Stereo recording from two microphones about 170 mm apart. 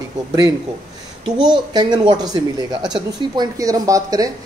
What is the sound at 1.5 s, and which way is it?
A woman's voice, 25° right (ahead or behind).